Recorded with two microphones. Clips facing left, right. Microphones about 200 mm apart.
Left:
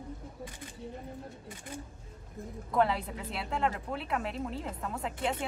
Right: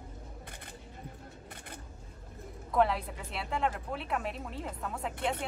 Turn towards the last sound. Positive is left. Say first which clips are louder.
# left 1 dB
turn(degrees=0)  # may be behind; listen again after turning